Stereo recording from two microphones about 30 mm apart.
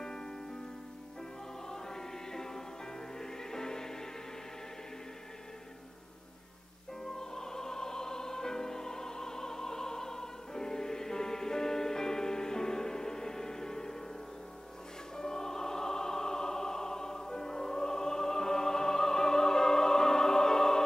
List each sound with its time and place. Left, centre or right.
0.0 s music: left
1.7 s choir: centre
3.2 s music: centre
7.1 s music: centre
15.1 s opera: centre